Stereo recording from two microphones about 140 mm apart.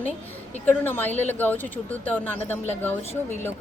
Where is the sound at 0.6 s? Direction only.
15° left (ahead or behind).